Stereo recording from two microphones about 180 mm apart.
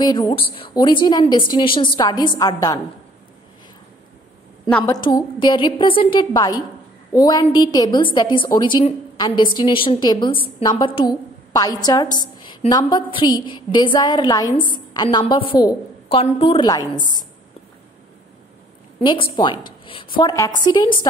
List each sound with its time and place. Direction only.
0.0 s a woman's voice: 25° left (ahead or behind)
4.6 s a woman's voice: 5° left (ahead or behind)
4.9 s a woman's voice: 25° left (ahead or behind)
19.0 s a woman's voice: 30° left (ahead or behind)